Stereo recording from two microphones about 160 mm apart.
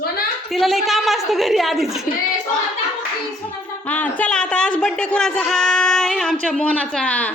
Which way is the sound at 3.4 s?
10° left (ahead or behind).